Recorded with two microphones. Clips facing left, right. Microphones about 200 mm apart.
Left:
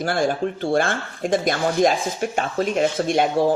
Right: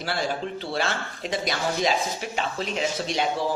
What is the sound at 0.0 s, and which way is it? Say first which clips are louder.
Speech: left 7 dB; 50° left (ahead or behind).